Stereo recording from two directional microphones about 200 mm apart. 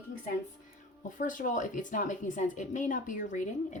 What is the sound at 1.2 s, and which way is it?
Speech, 40° left (ahead or behind).